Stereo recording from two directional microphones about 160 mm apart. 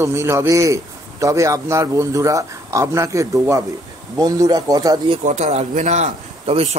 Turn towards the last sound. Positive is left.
turn(degrees=-40)  # may be behind; listen again after turning